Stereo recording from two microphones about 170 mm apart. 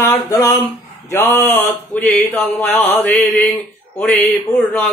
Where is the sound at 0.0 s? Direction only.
15° left (ahead or behind).